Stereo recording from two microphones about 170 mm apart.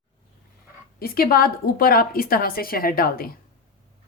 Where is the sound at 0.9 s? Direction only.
60° left (ahead or behind).